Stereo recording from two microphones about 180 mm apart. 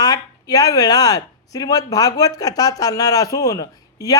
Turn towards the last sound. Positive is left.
turn(degrees=20)  # may be behind; listen again after turning